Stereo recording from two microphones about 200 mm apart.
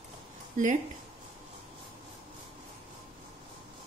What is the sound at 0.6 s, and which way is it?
Speech, 40° right (ahead or behind).